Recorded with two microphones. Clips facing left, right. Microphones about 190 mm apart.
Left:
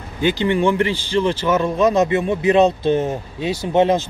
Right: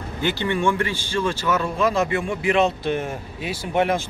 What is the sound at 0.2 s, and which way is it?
Speech, 15° left (ahead or behind).